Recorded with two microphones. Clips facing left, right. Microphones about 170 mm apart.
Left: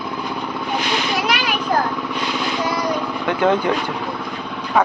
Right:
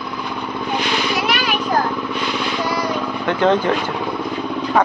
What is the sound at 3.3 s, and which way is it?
Speech, 10° left (ahead or behind).